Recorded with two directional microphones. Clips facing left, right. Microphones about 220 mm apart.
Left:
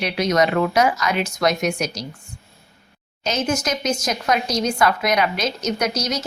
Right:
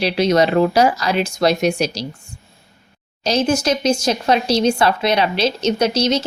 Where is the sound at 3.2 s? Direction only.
30° right (ahead or behind).